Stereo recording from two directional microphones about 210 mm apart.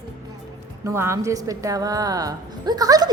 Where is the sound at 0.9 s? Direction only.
15° right (ahead or behind).